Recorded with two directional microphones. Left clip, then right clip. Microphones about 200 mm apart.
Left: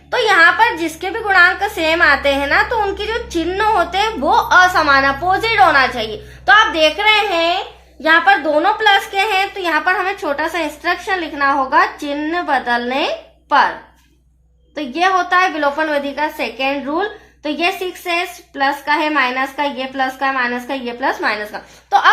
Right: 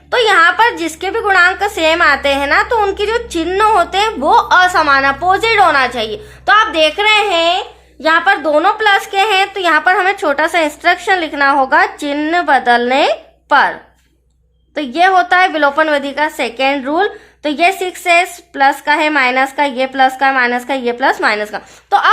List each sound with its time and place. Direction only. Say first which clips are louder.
0.1 s a woman's voice: right 2 dB; 35° right (ahead or behind); by 13.7 s 50° right (ahead or behind)
14.8 s a woman's voice: right 5 dB; 50° right (ahead or behind)